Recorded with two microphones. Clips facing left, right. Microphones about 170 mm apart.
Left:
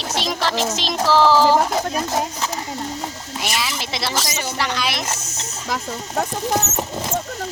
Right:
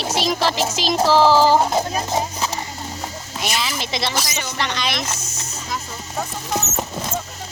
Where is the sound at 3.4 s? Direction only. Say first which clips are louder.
Right 1 dB; centre (ahead or behind).